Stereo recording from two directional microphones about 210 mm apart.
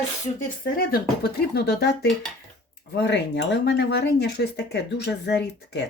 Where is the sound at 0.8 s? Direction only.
45° left (ahead or behind).